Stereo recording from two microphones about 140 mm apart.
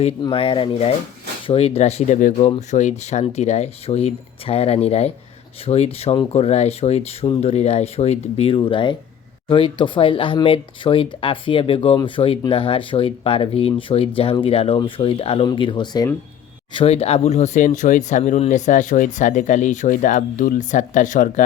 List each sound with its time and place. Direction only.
0.2 s speech: 40° left (ahead or behind)
16.7 s speech: 45° left (ahead or behind); by 21.4 s 70° left (ahead or behind)